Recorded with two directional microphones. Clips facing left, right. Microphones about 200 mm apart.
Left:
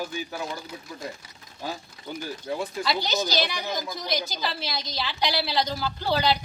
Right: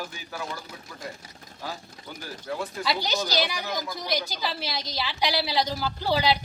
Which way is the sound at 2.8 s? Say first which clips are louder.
Even; 10° right (ahead or behind).